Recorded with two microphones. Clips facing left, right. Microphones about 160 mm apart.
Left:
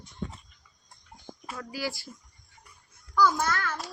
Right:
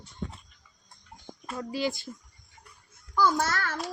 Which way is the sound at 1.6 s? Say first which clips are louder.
Right 5 dB; 25° right (ahead or behind).